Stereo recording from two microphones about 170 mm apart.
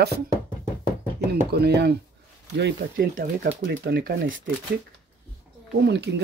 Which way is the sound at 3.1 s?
60° right (ahead or behind).